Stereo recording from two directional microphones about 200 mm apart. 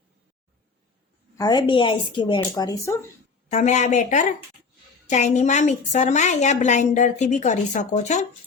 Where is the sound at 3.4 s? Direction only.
35° left (ahead or behind).